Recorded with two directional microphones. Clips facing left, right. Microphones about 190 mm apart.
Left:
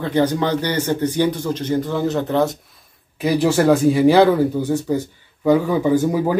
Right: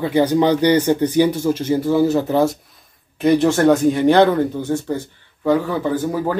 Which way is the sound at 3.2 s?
5° left (ahead or behind).